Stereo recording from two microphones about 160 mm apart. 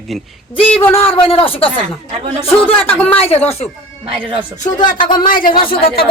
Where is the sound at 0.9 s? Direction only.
35° left (ahead or behind).